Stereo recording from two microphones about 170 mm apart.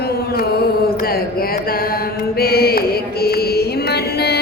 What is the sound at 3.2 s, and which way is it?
Music, 70° left (ahead or behind).